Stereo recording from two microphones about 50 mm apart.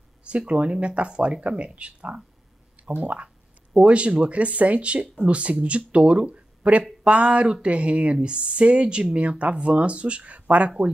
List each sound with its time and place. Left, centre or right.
0.2 s speech: right